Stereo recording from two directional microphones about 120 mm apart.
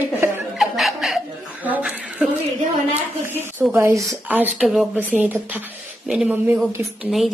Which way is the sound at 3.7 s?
25° right (ahead or behind).